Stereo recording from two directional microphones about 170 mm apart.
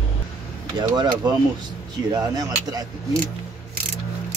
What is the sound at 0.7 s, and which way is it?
Speech, 25° right (ahead or behind).